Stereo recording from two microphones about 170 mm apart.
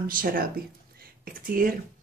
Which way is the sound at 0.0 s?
55° right (ahead or behind).